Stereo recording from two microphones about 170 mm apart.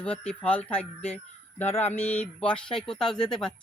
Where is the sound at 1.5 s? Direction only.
40° left (ahead or behind).